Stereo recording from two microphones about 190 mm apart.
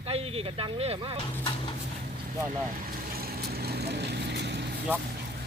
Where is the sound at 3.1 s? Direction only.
50° right (ahead or behind).